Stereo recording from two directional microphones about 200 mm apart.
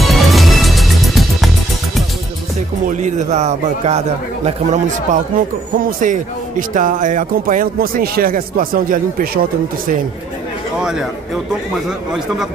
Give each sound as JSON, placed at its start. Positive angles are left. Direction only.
{"t": 0.0, "sound": "music", "side_deg": 0}
{"t": 2.9, "sound": "a man's voice", "side_deg": -35}
{"t": 10.8, "sound": "a man's voice", "side_deg": 0}